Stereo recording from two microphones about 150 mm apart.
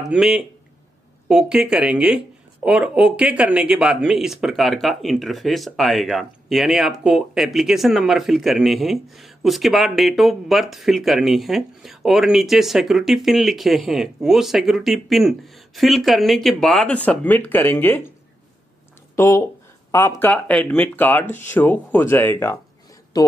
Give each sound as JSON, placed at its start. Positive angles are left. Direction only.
{"t": 0.0, "sound": "speech", "side_deg": -5}
{"t": 19.1, "sound": "speech", "side_deg": 20}
{"t": 23.2, "sound": "speech", "side_deg": 25}